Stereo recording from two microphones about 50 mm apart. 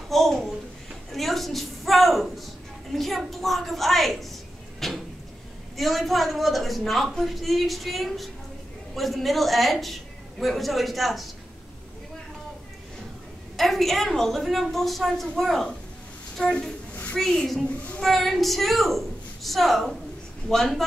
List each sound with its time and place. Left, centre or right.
0.1 s a child's voice: centre
13.6 s a woman's voice: centre
16.9 s a sound: left
18.0 s a woman's voice: centre